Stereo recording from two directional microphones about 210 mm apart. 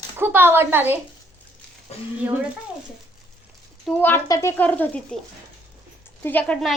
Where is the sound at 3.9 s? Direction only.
10° left (ahead or behind).